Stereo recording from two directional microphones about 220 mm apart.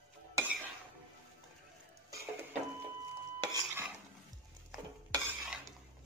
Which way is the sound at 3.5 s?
10° right (ahead or behind).